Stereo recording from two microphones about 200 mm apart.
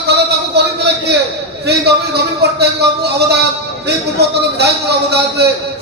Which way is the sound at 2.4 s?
55° right (ahead or behind).